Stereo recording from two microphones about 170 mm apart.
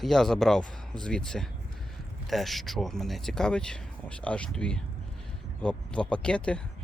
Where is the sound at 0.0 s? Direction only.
Centre (ahead or behind).